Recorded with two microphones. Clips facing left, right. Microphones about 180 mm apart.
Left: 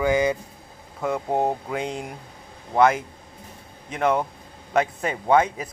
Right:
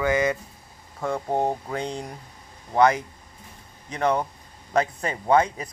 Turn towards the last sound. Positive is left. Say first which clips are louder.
# left 1 dB
turn(degrees=5)  # may be behind; listen again after turning